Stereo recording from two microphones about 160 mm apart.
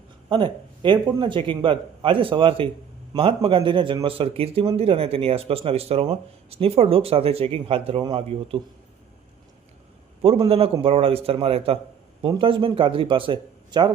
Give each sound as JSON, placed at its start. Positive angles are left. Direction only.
{"t": 0.3, "sound": "a man's voice", "side_deg": -30}
{"t": 10.5, "sound": "a man's voice", "side_deg": -35}